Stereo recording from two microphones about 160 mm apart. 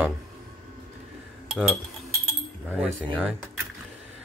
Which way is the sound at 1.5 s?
Centre (ahead or behind).